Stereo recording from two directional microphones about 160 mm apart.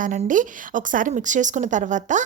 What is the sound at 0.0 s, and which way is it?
A woman's voice, 55° right (ahead or behind).